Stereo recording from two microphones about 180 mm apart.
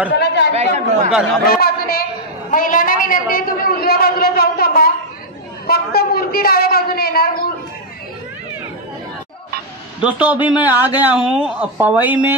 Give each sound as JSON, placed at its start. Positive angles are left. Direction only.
{"t": 0.1, "sound": "chatter", "side_deg": 70}
{"t": 0.5, "sound": "speech", "side_deg": -35}
{"t": 1.1, "sound": "speech", "side_deg": 0}
{"t": 1.6, "sound": "a woman's voice", "side_deg": 55}
{"t": 10.0, "sound": "a man's voice", "side_deg": -5}